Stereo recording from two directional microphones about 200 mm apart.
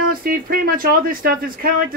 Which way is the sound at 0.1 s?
45° right (ahead or behind).